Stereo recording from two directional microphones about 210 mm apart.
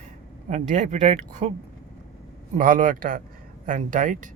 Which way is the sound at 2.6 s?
40° right (ahead or behind).